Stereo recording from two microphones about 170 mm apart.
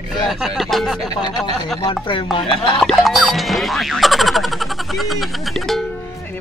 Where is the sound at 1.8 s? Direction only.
30° left (ahead or behind).